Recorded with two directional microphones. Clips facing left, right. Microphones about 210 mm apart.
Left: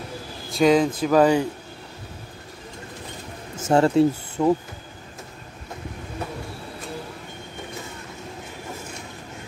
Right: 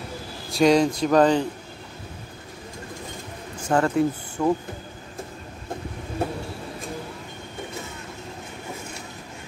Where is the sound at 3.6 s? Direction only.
25° left (ahead or behind).